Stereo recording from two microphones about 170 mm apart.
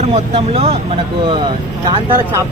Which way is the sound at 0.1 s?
35° right (ahead or behind).